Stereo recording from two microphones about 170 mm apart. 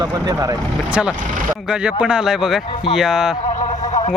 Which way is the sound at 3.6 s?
30° left (ahead or behind).